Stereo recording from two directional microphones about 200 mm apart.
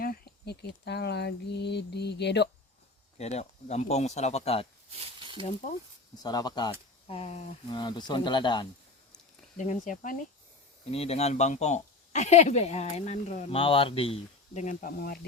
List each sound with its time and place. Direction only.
0.0 s speech: 50° left (ahead or behind)
3.2 s speech: 35° left (ahead or behind)
4.9 s a sound: 25° right (ahead or behind)
5.4 s speech: 35° left (ahead or behind)
6.2 s speech: 20° left (ahead or behind)
7.1 s speech: 30° left (ahead or behind)
9.6 s speech: 40° left (ahead or behind)